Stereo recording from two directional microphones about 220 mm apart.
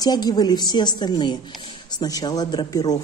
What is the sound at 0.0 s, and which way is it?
Speech, 20° left (ahead or behind).